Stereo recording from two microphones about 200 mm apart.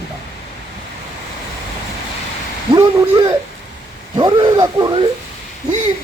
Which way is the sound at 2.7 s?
15° right (ahead or behind).